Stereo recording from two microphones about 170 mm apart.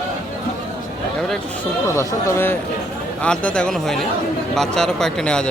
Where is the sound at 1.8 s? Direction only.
15° left (ahead or behind).